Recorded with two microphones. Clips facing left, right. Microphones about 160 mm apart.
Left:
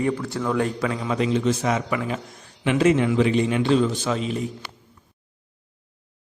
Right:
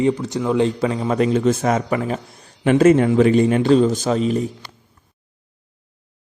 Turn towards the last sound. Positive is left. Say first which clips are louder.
# right 6 dB
turn(degrees=-40)  # may be behind; listen again after turning